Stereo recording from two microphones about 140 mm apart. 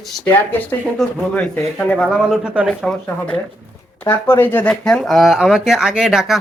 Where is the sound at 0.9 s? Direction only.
10° left (ahead or behind).